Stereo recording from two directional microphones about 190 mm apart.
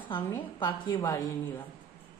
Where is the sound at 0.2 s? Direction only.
20° left (ahead or behind).